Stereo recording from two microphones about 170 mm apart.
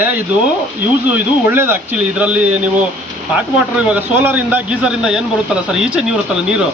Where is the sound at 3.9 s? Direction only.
10° right (ahead or behind).